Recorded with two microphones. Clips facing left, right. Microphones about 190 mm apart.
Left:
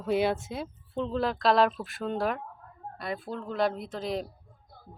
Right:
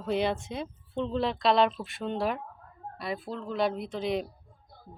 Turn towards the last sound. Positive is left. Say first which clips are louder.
# right 2 dB
turn(degrees=0)  # may be behind; listen again after turning